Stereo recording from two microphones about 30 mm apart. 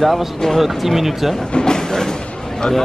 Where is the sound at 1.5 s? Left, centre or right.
Left.